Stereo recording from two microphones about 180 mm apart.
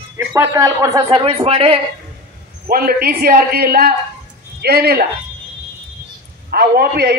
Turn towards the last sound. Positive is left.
turn(degrees=-60)  # may be behind; listen again after turning